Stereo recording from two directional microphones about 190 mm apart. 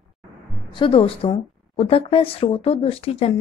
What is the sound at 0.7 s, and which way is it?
A woman's voice, 30° left (ahead or behind).